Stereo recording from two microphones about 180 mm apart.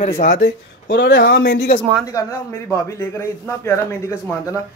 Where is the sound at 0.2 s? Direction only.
45° left (ahead or behind).